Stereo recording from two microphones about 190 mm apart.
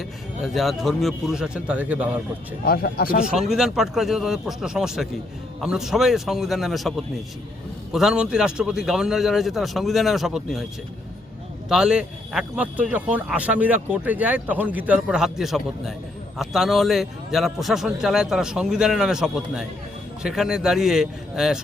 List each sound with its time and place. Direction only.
0.0 s a man's voice: centre (ahead or behind)
2.6 s speech: 50° left (ahead or behind)
3.2 s a man's voice: 5° right (ahead or behind)
11.7 s a man's voice: 5° right (ahead or behind)